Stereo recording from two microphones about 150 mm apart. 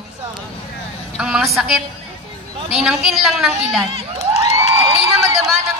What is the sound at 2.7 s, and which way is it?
A woman's voice, centre (ahead or behind).